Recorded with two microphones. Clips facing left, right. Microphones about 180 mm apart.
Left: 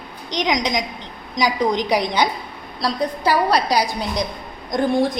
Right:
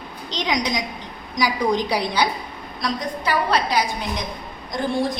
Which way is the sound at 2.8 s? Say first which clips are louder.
Left 4 dB; 35° left (ahead or behind).